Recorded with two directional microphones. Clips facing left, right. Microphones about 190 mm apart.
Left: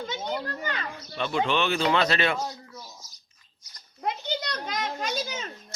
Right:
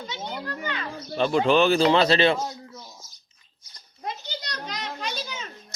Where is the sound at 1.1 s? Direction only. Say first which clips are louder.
Right 6 dB; 35° right (ahead or behind).